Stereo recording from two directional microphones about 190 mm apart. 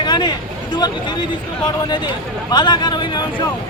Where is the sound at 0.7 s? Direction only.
25° left (ahead or behind).